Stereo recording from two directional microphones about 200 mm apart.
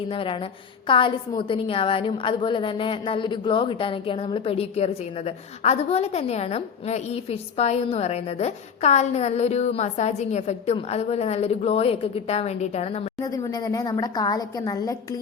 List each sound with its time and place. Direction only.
0.1 s a woman's voice: 25° left (ahead or behind)
13.1 s a woman's voice: 20° left (ahead or behind)